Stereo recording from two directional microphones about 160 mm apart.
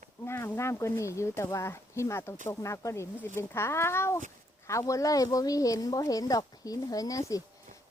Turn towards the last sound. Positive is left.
turn(degrees=20)  # may be behind; listen again after turning